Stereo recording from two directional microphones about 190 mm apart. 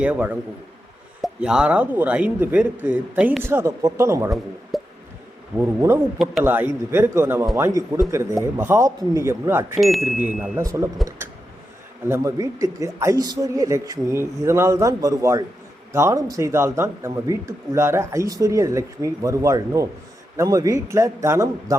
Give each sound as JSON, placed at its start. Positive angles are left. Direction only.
{"t": 0.0, "sound": "speech", "side_deg": -5}
{"t": 4.7, "sound": "a sound", "side_deg": 0}
{"t": 5.5, "sound": "speech", "side_deg": -15}
{"t": 9.8, "sound": "speech", "side_deg": 0}
{"t": 10.6, "sound": "speech", "side_deg": -15}
{"t": 12.0, "sound": "speech", "side_deg": -15}